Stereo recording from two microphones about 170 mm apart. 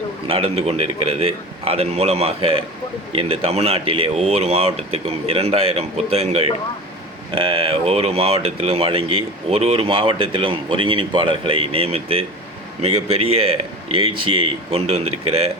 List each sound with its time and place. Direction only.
0.3 s speech: 35° right (ahead or behind)